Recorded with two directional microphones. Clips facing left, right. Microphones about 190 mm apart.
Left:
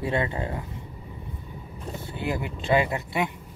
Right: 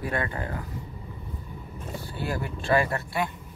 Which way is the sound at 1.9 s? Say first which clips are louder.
Left 1 dB; 20° left (ahead or behind).